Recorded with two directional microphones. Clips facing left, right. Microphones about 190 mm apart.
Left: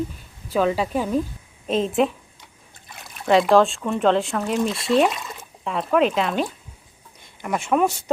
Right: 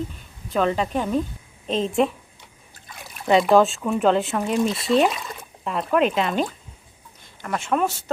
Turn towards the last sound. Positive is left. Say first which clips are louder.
# left 3 dB
turn(degrees=0)  # may be behind; listen again after turning